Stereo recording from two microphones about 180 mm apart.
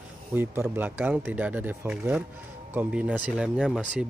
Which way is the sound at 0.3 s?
10° right (ahead or behind).